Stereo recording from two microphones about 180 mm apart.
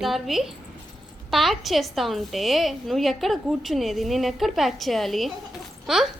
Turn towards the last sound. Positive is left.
turn(degrees=0)  # may be behind; listen again after turning